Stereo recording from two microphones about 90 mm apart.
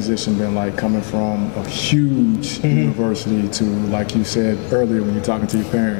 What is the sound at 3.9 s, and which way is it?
A man's voice, 20° left (ahead or behind).